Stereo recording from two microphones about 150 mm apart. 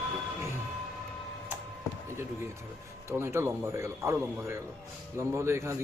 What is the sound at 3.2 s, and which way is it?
Speech, 15° right (ahead or behind).